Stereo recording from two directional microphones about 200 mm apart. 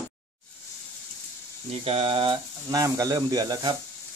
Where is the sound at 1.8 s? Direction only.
30° right (ahead or behind).